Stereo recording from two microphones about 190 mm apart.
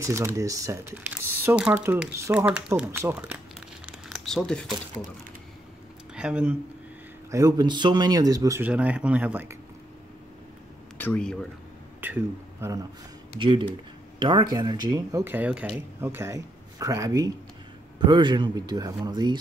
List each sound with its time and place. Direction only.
0.0 s speech: 15° right (ahead or behind)
3.8 s crumpling: centre (ahead or behind)
6.1 s speech: 5° right (ahead or behind)
7.2 s speech: 15° right (ahead or behind)
11.0 s speech: 10° left (ahead or behind)
12.0 s speech: 10° right (ahead or behind)
13.4 s speech: 25° right (ahead or behind)